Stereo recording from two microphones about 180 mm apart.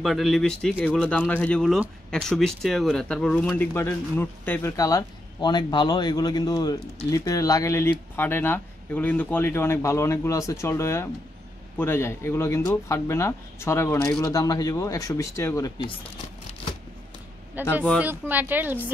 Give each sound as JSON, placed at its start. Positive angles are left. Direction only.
{"t": 0.0, "sound": "speech", "side_deg": 0}
{"t": 14.2, "sound": "speech", "side_deg": 20}
{"t": 17.8, "sound": "speech", "side_deg": -5}